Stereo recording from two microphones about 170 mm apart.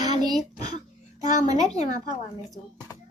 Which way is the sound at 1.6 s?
40° left (ahead or behind).